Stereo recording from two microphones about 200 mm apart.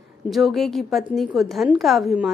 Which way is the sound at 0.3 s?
Centre (ahead or behind).